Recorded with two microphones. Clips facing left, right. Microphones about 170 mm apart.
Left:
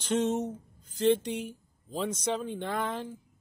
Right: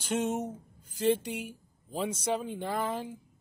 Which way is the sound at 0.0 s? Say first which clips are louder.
Left 3 dB; 10° right (ahead or behind).